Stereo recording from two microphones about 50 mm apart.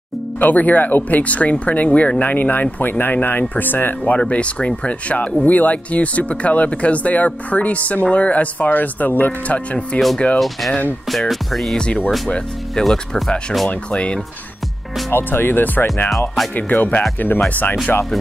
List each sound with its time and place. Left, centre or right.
0.4 s speech: left
11.1 s speech: centre
11.7 s speech: centre
13.7 s speech: left
15.1 s speech: left